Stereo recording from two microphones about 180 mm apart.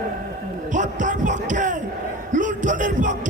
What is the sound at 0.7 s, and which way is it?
Speech, 45° right (ahead or behind).